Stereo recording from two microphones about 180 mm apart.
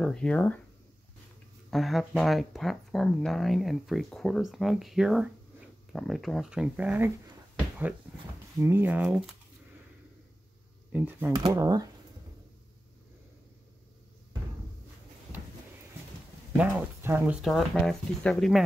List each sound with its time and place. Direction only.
0.0 s speech: 5° left (ahead or behind)
1.7 s speech: centre (ahead or behind)
8.6 s speech: 10° right (ahead or behind)
10.9 s speech: 10° right (ahead or behind)
11.3 s speech: 20° right (ahead or behind)
16.5 s speech: 10° right (ahead or behind)